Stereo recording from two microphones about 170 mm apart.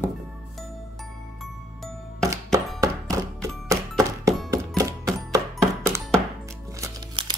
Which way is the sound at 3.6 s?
20° right (ahead or behind).